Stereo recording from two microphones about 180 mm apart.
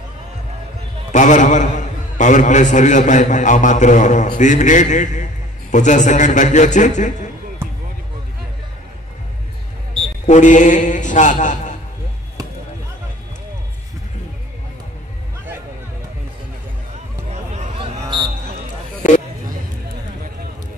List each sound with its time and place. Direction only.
1.1 s a man's voice: 45° left (ahead or behind)
10.2 s a man's voice: 45° left (ahead or behind)
17.3 s a sound: 40° right (ahead or behind)
18.0 s basketball bounce: 25° right (ahead or behind)